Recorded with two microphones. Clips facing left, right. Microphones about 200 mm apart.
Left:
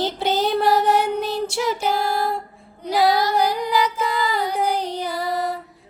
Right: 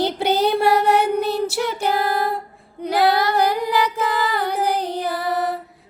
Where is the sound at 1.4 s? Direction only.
5° right (ahead or behind).